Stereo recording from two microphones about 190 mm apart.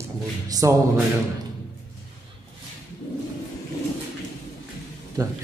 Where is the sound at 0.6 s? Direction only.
15° right (ahead or behind).